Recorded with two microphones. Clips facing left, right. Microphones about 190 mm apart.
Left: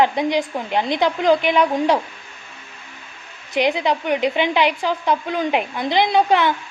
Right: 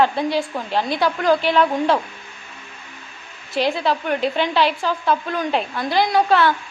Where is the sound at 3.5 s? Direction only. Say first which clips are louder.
Left 1 dB; 20° left (ahead or behind).